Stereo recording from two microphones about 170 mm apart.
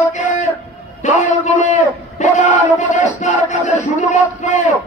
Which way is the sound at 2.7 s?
45° left (ahead or behind).